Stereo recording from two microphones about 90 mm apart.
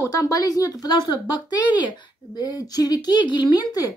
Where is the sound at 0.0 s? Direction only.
40° left (ahead or behind).